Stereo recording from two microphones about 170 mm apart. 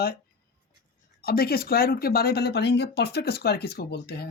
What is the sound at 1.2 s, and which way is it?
Speech, 60° left (ahead or behind).